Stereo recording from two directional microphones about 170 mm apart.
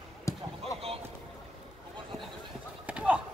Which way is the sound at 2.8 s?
5° right (ahead or behind).